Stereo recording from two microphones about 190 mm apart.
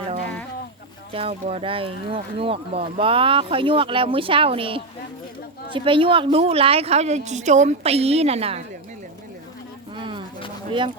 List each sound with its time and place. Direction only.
1.1 s a woman's voice: 30° right (ahead or behind)
10.0 s a sound: 25° right (ahead or behind)
10.7 s speech: 30° right (ahead or behind)